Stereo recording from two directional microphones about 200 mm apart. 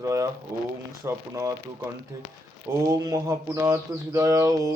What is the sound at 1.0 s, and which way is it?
Mantra, 15° right (ahead or behind).